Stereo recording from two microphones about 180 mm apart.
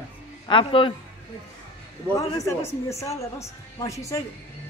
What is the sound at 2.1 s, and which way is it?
A woman's voice, 20° left (ahead or behind).